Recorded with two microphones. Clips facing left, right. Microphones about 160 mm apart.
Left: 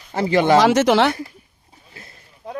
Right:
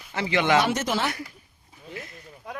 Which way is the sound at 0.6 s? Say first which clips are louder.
Left 10 dB; 90° left.